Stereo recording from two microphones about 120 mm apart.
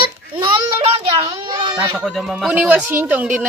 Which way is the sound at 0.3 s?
45° right (ahead or behind).